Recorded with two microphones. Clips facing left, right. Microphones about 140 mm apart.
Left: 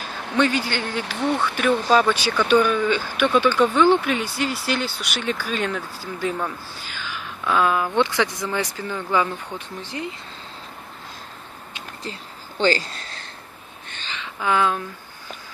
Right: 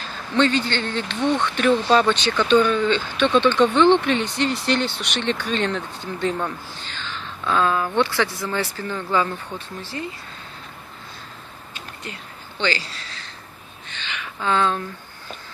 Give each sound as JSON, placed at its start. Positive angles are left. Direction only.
{"t": 0.4, "sound": "speech", "side_deg": 10}
{"t": 12.0, "sound": "a sound", "side_deg": 40}
{"t": 14.2, "sound": "speech", "side_deg": 10}